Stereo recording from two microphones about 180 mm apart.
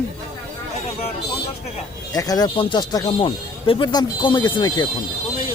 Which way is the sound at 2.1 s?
20° left (ahead or behind).